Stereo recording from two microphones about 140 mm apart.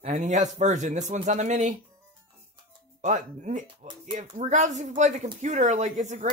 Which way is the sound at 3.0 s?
60° right (ahead or behind).